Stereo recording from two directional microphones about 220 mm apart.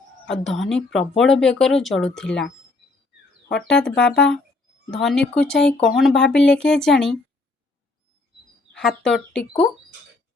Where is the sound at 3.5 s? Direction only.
50° left (ahead or behind).